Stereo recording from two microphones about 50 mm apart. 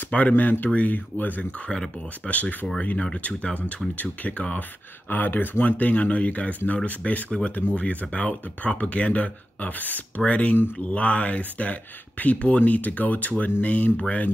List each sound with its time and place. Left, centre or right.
0.3 s speech: left
1.7 s speech: centre
2.2 s speech: left
10.2 s speech: left